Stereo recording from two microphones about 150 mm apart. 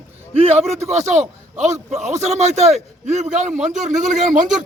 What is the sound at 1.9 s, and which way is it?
A man's voice, 50° right (ahead or behind).